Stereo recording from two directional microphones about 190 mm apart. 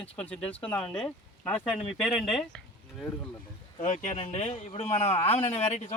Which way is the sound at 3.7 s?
40° left (ahead or behind).